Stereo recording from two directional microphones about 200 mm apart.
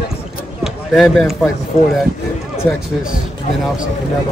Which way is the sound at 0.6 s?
Centre (ahead or behind).